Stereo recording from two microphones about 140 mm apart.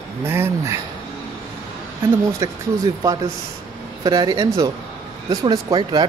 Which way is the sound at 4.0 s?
30° right (ahead or behind).